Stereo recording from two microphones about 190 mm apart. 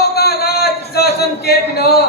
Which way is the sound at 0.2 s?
55° left (ahead or behind).